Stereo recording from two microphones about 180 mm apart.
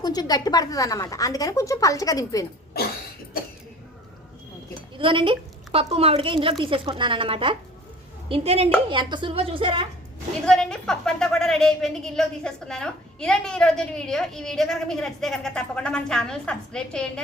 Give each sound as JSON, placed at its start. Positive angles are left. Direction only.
{"t": 0.0, "sound": "speech", "side_deg": 20}
{"t": 4.9, "sound": "a woman's voice", "side_deg": -30}
{"t": 10.4, "sound": "a woman's voice", "side_deg": 5}